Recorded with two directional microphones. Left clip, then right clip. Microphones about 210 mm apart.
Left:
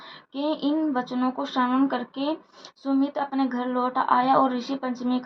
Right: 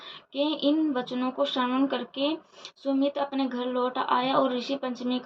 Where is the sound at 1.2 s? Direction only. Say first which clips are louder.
Left 1 dB; 30° left (ahead or behind).